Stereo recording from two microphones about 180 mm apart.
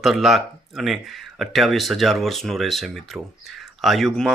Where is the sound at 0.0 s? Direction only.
Centre (ahead or behind).